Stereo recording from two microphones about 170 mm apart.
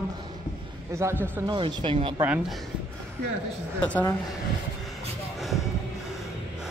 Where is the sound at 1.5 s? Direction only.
30° right (ahead or behind).